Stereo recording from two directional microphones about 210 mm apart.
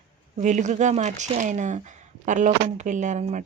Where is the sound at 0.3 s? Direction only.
35° right (ahead or behind).